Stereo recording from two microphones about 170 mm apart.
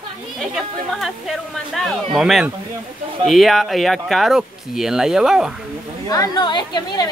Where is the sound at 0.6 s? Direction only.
Centre (ahead or behind).